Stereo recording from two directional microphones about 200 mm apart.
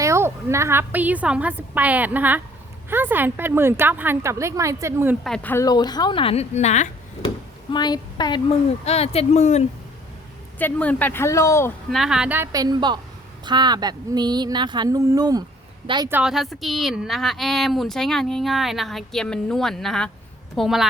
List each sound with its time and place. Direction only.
0.0 s a woman's voice: 15° right (ahead or behind)
5.2 s a woman's voice: 5° left (ahead or behind); by 6.8 s 35° left (ahead or behind)
7.7 s a woman's voice: 20° left (ahead or behind)
10.6 s speech: 5° left (ahead or behind)
11.9 s a woman's voice: centre (ahead or behind); by 15.4 s 20° right (ahead or behind)
16.0 s speech: 5° right (ahead or behind)